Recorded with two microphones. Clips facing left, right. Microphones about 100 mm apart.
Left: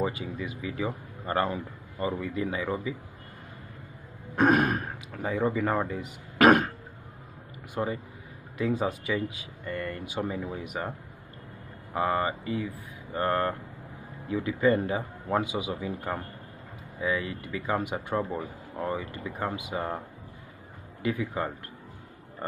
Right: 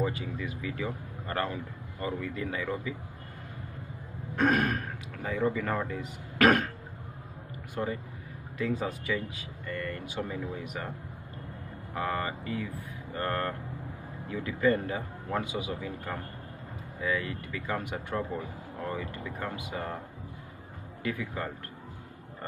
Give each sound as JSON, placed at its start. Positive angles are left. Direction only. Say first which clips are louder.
{"t": 0.0, "sound": "speech", "louder": "left 1 dB", "side_deg": 15}
{"t": 4.4, "sound": "speech", "louder": "left 4 dB", "side_deg": 15}
{"t": 5.9, "sound": "throat clearing", "louder": "left 1 dB", "side_deg": 15}
{"t": 7.7, "sound": "speech", "louder": "left 2 dB", "side_deg": 15}
{"t": 11.9, "sound": "speech", "louder": "left 5 dB", "side_deg": 15}
{"t": 21.0, "sound": "speech", "louder": "left 4 dB", "side_deg": 15}